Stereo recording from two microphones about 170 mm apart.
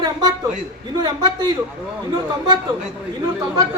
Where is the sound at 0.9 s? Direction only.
25° right (ahead or behind).